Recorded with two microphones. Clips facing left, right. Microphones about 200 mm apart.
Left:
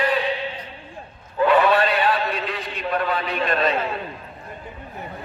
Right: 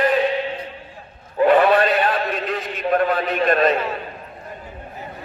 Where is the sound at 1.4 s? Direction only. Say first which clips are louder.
Right 3 dB; 50° right (ahead or behind).